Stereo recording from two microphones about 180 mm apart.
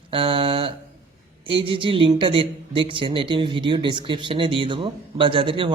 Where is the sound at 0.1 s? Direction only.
30° right (ahead or behind).